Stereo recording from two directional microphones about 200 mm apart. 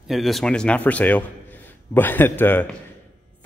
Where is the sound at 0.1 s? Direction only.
Centre (ahead or behind).